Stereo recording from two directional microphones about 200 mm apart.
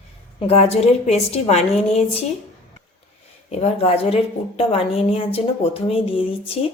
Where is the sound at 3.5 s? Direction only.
30° left (ahead or behind).